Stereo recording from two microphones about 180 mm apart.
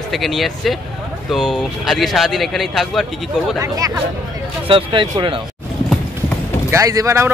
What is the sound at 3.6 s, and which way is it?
Speech, 20° right (ahead or behind).